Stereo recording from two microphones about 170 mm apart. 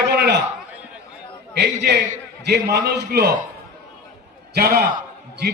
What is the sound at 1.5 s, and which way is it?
A man's voice, 75° right (ahead or behind).